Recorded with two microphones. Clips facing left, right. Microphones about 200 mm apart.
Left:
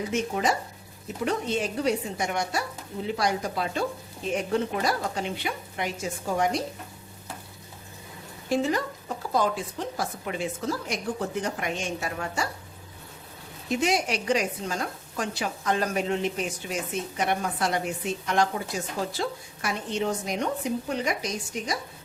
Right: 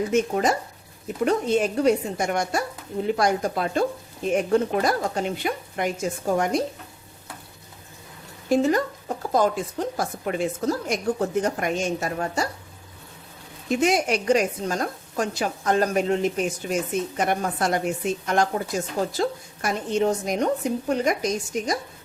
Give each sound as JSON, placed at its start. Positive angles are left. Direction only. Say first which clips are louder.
{"t": 0.1, "sound": "a woman's voice", "louder": "right 3 dB", "side_deg": -45}
{"t": 8.4, "sound": "a woman's voice", "louder": "right 5 dB", "side_deg": -45}
{"t": 13.7, "sound": "a woman's voice", "louder": "right 4 dB", "side_deg": -50}